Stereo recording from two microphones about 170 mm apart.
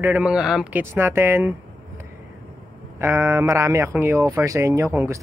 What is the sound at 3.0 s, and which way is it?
Speech, 15° right (ahead or behind).